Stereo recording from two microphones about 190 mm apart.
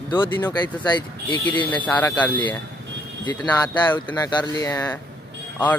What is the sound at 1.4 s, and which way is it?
Speech, 10° left (ahead or behind).